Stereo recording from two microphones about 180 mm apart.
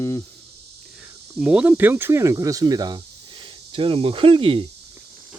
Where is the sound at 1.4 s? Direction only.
5° right (ahead or behind); by 4.6 s 30° right (ahead or behind).